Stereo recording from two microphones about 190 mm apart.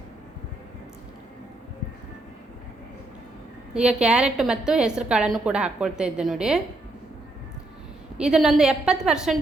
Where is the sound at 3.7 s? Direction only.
5° right (ahead or behind).